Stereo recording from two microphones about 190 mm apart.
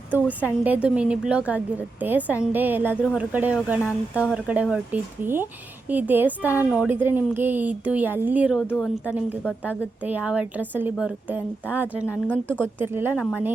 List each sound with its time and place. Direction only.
0.4 s a woman's voice: 10° right (ahead or behind)
8.7 s a woman's voice: 10° left (ahead or behind)
9.6 s a woman's voice: 10° right (ahead or behind)